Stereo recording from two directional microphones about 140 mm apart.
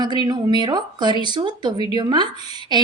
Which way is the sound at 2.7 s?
30° right (ahead or behind).